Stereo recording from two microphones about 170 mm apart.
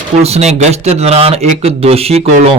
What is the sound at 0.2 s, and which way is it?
Speech, 40° right (ahead or behind).